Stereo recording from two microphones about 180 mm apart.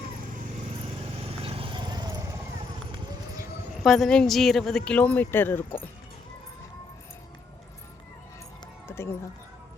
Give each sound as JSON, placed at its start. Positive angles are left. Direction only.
{"t": 1.4, "sound": "horse", "side_deg": -30}
{"t": 3.8, "sound": "speech", "side_deg": 0}